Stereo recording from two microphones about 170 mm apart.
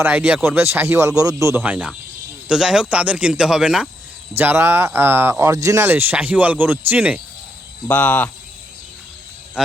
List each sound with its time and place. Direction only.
0.0 s speech: 5° right (ahead or behind)
7.9 s speech: 10° left (ahead or behind)
9.6 s speech: 5° right (ahead or behind)